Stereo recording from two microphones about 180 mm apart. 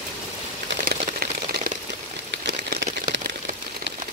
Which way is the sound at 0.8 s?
55° right (ahead or behind).